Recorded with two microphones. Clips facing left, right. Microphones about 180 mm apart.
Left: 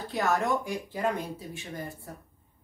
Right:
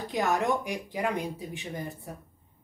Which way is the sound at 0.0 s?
15° right (ahead or behind).